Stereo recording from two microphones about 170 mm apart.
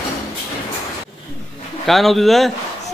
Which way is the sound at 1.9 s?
Centre (ahead or behind).